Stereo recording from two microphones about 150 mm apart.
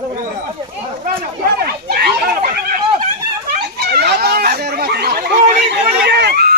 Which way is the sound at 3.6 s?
90° right.